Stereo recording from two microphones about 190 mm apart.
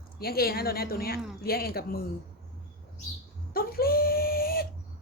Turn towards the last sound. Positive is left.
turn(degrees=50)  # may be behind; listen again after turning